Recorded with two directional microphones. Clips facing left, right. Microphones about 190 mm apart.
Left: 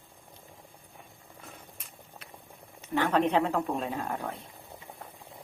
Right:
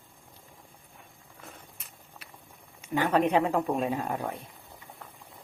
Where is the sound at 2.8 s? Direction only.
10° right (ahead or behind).